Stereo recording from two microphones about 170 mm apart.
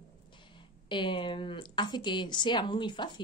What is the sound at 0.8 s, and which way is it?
A woman's voice, 30° left (ahead or behind).